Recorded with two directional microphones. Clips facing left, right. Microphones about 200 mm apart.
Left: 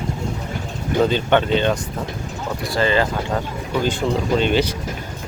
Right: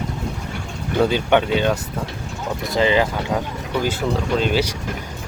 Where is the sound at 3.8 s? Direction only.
5° right (ahead or behind).